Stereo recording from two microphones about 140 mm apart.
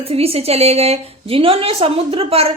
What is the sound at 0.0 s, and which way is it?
A woman's voice, 45° right (ahead or behind).